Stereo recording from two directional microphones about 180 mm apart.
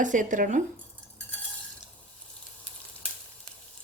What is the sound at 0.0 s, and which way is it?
Speech, 45° right (ahead or behind).